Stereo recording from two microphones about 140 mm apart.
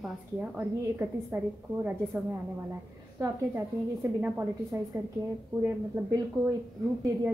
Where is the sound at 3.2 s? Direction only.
15° right (ahead or behind).